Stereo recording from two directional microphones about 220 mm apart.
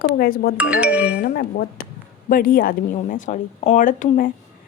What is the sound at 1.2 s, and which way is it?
A woman's voice, 45° left (ahead or behind).